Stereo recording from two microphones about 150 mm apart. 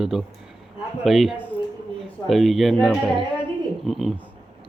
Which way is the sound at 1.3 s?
10° left (ahead or behind).